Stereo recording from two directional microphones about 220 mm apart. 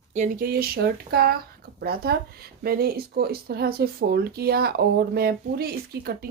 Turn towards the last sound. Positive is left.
turn(degrees=-45)  # may be behind; listen again after turning